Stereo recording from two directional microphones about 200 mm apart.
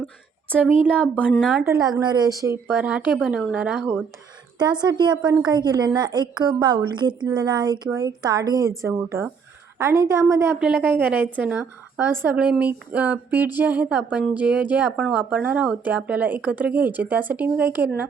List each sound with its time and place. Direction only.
0.5 s a woman's voice: 5° right (ahead or behind)
0.9 s a woman's voice: 5° left (ahead or behind)
1.6 s a woman's voice: 15° right (ahead or behind)
4.5 s a woman's voice: 20° right (ahead or behind)
5.1 s a woman's voice: 5° right (ahead or behind)
5.4 s a woman's voice: 20° right (ahead or behind)